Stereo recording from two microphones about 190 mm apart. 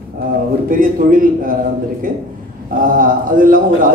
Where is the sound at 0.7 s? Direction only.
45° right (ahead or behind).